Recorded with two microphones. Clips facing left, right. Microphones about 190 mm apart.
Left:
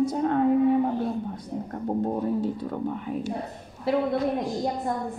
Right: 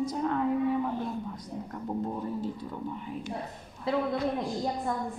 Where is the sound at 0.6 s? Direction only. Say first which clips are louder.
Left 6 dB; 35° left (ahead or behind).